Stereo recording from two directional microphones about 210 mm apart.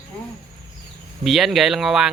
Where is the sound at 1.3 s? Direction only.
Centre (ahead or behind).